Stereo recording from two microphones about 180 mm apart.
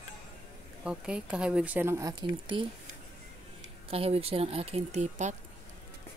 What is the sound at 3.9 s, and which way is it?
A woman's voice, 35° right (ahead or behind).